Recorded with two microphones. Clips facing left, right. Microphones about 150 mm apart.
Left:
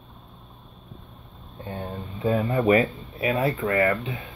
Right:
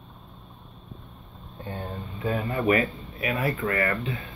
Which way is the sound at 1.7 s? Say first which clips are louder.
Left 2 dB; 25° left (ahead or behind).